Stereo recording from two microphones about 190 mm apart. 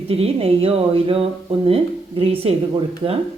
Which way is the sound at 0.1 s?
30° right (ahead or behind).